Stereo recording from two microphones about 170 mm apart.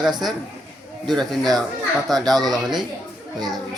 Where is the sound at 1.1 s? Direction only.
Centre (ahead or behind).